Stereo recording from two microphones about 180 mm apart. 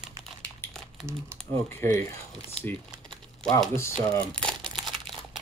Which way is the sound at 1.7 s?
15° left (ahead or behind).